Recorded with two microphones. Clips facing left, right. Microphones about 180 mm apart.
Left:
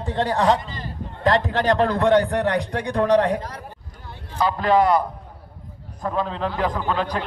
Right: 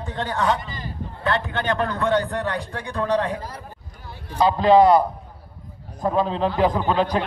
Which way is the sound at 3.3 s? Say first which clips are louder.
Left 3 dB; 10° right (ahead or behind).